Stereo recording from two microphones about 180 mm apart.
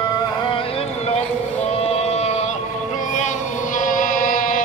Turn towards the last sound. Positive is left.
turn(degrees=50)  # may be behind; listen again after turning